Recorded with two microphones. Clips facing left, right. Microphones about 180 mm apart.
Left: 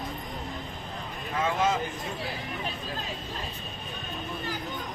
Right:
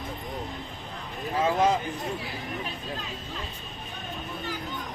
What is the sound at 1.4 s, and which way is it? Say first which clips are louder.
Speech: right 3 dB; 35° right (ahead or behind).